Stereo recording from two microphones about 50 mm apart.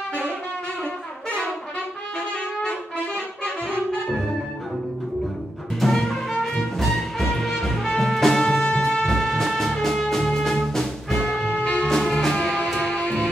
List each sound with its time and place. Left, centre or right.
5.8 s music: centre
8.7 s music: centre
9.0 s music: centre